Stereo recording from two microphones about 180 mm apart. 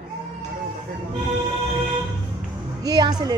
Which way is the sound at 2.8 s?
20° right (ahead or behind).